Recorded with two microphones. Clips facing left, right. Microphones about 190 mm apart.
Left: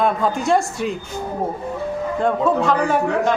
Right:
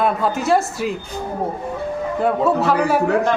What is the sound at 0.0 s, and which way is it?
Speech, 5° right (ahead or behind).